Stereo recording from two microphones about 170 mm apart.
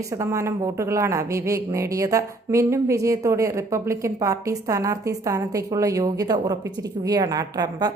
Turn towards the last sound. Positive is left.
turn(degrees=-25)  # may be behind; listen again after turning